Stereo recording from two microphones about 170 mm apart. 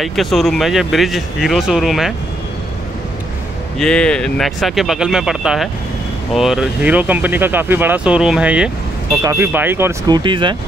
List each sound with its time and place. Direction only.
0.0 s speech: centre (ahead or behind)
3.7 s speech: 5° left (ahead or behind)
9.1 s speech: 20° right (ahead or behind)